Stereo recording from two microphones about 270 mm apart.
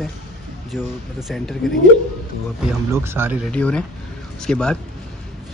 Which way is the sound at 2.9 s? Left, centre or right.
Centre.